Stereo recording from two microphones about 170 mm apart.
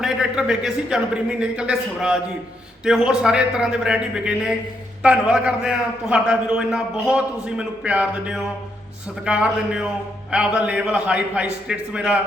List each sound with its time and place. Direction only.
0.0 s a man's voice: 5° right (ahead or behind)